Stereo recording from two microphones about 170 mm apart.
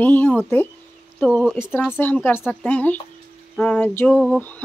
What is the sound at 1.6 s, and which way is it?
Speech, 15° left (ahead or behind).